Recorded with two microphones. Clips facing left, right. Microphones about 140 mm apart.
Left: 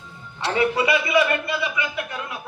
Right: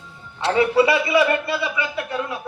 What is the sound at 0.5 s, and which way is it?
A man's voice, 30° right (ahead or behind).